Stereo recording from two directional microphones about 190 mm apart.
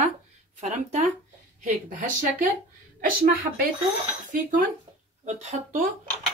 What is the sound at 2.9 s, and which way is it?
Speech, 50° right (ahead or behind).